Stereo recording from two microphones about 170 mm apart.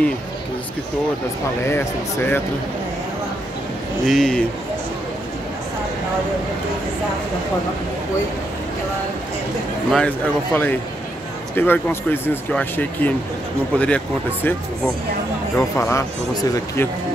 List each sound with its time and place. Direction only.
1.7 s speech: 15° left (ahead or behind)
4.0 s a man's voice: 5° left (ahead or behind)
9.8 s speech: 5° left (ahead or behind)
15.5 s speech: 15° left (ahead or behind)